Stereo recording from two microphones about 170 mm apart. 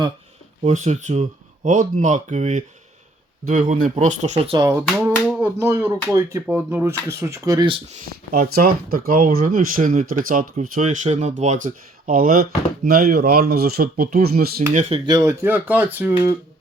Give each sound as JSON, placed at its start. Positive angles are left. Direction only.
{"t": 0.6, "sound": "speech", "side_deg": -45}
{"t": 4.5, "sound": "speech", "side_deg": -20}
{"t": 4.9, "sound": "a sound", "side_deg": -15}
{"t": 6.3, "sound": "speech", "side_deg": -15}
{"t": 8.3, "sound": "speech", "side_deg": -60}
{"t": 14.7, "sound": "speech", "side_deg": -40}
{"t": 15.0, "sound": "speech", "side_deg": -20}